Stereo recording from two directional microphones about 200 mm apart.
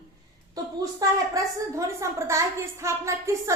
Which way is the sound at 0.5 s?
15° right (ahead or behind).